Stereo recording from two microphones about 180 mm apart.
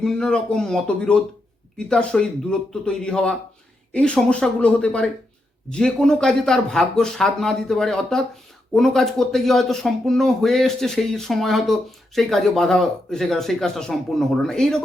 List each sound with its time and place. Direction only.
0.0 s speech: 5° left (ahead or behind)